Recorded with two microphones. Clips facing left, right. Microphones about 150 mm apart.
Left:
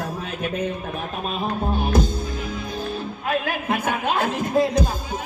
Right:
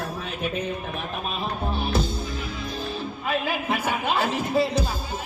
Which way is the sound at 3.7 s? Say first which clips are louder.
Left 4 dB; 50° left (ahead or behind).